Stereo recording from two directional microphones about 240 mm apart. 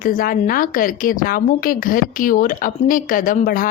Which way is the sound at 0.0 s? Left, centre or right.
Left.